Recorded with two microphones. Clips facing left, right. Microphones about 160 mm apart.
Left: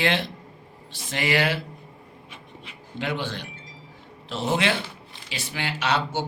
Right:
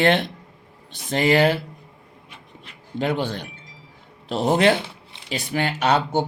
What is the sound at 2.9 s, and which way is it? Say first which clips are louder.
Speech: right 6 dB; 40° right (ahead or behind).